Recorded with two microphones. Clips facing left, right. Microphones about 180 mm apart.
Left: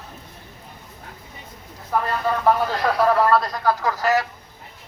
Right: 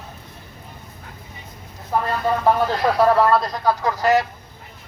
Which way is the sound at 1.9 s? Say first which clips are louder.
Right 1 dB; 25° right (ahead or behind).